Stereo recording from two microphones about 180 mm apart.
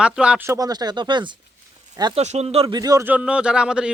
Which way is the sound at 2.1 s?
35° right (ahead or behind).